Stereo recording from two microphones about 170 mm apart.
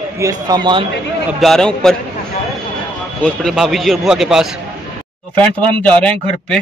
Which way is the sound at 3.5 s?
Centre (ahead or behind).